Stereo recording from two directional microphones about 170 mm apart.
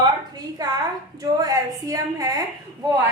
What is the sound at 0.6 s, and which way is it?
A woman's voice, 25° right (ahead or behind).